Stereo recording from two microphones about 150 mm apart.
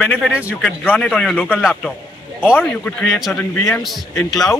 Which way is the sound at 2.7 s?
5° left (ahead or behind).